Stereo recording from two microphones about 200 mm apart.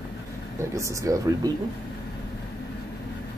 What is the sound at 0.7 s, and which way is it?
Speech, 15° right (ahead or behind).